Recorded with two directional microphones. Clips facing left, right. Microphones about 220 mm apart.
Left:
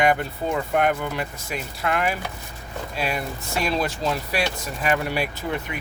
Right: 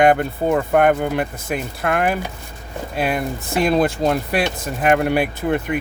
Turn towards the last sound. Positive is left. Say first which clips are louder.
# right 8 dB
turn(degrees=-55)  # may be behind; listen again after turning